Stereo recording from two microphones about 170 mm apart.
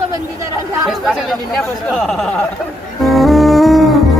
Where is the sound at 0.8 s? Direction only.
Centre (ahead or behind).